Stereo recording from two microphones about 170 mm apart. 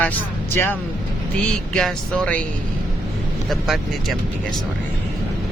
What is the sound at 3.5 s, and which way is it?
Speech, centre (ahead or behind).